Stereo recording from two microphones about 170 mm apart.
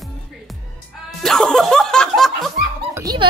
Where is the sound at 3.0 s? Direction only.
25° right (ahead or behind).